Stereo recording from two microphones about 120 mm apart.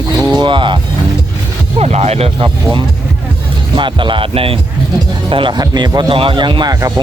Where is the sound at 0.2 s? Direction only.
35° right (ahead or behind).